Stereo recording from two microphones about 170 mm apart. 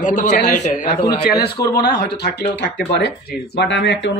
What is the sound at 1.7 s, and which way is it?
A man's voice, 75° left (ahead or behind).